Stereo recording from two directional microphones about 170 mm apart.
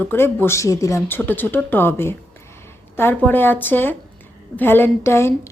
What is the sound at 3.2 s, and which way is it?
A woman's voice, 10° left (ahead or behind).